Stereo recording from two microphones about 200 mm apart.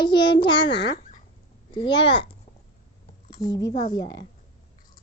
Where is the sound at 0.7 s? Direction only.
60° left (ahead or behind).